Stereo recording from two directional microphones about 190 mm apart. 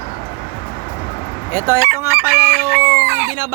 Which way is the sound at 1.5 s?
15° right (ahead or behind).